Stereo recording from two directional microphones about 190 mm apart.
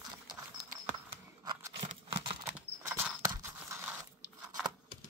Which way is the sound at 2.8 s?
15° right (ahead or behind).